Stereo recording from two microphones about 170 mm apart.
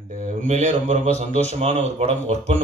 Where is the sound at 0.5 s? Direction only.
45° right (ahead or behind).